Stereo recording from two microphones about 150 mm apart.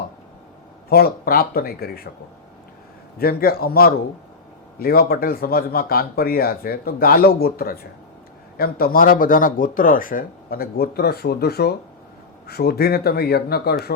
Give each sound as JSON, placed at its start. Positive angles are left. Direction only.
{"t": 0.9, "sound": "speech", "side_deg": 90}
{"t": 3.2, "sound": "speech", "side_deg": 90}